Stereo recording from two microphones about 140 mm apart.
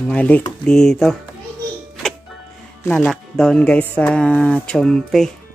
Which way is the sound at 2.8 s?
20° left (ahead or behind).